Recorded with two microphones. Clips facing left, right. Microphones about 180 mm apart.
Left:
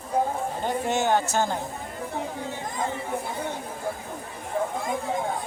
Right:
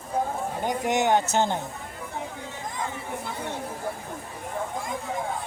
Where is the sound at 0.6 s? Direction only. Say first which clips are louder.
Right 2 dB; 15° right (ahead or behind).